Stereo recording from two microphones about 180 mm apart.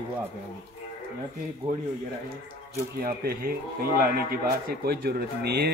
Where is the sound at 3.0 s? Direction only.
55° right (ahead or behind).